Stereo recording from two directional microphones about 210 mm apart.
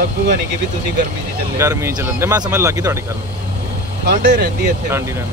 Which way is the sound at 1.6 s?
15° right (ahead or behind).